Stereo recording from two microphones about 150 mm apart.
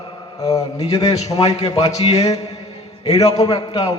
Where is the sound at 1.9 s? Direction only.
45° left (ahead or behind).